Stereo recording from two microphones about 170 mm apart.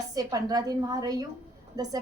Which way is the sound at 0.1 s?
20° right (ahead or behind).